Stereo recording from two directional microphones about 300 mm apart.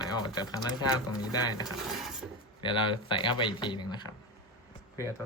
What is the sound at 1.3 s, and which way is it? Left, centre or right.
Speech, centre.